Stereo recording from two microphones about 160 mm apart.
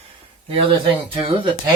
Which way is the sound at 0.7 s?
30° right (ahead or behind).